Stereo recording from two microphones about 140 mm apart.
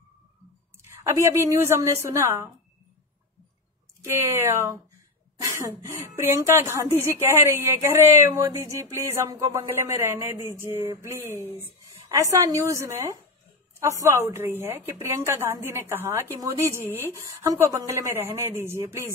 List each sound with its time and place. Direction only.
0.8 s speech: 20° right (ahead or behind)
4.0 s speech: 20° right (ahead or behind)